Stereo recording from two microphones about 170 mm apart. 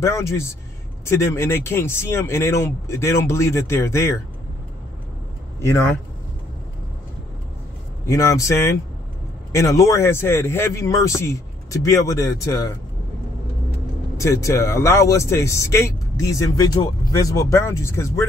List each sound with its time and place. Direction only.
0.0 s speech: 15° left (ahead or behind)
5.6 s speech: 15° left (ahead or behind)
8.1 s speech: 20° left (ahead or behind)
14.1 s speech: 20° left (ahead or behind)